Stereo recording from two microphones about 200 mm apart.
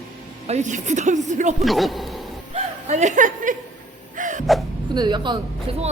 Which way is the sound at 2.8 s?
35° right (ahead or behind).